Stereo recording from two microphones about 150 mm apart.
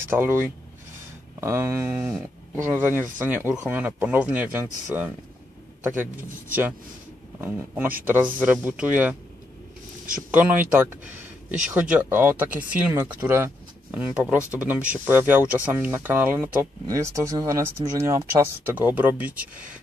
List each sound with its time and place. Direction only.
0.1 s speech: 15° right (ahead or behind)
7.3 s speech: 10° right (ahead or behind)
10.3 s speech: 10° right (ahead or behind)